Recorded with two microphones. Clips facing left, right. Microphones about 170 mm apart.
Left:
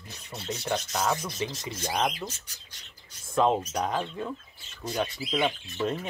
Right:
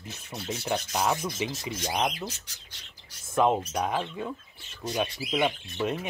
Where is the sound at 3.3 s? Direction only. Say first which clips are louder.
Even; 10° right (ahead or behind).